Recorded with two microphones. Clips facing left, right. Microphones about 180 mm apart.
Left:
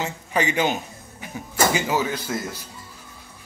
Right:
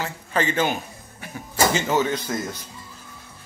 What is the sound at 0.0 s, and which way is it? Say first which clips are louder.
Speech: left 1 dB; 15° left (ahead or behind).